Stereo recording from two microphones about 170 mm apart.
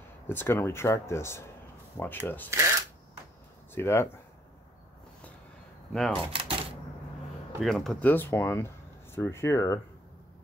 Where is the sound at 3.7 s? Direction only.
15° left (ahead or behind).